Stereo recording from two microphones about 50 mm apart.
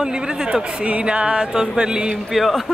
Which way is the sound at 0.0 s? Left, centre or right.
Centre.